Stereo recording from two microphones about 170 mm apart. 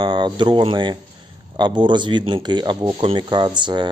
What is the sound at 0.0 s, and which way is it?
Speech, 25° right (ahead or behind).